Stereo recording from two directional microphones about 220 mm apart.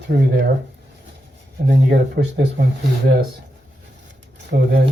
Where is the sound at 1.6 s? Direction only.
50° right (ahead or behind).